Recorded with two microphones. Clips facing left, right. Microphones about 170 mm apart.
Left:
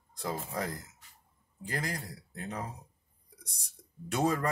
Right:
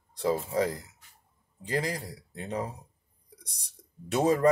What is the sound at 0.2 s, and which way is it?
Speech, 30° right (ahead or behind).